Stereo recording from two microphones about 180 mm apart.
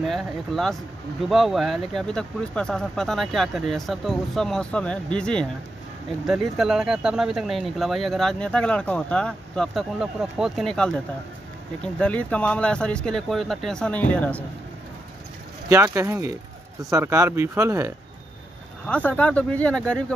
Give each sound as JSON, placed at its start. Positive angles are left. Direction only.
{"t": 0.0, "sound": "speech", "side_deg": 0}
{"t": 15.7, "sound": "speech", "side_deg": -15}
{"t": 18.9, "sound": "speech", "side_deg": 10}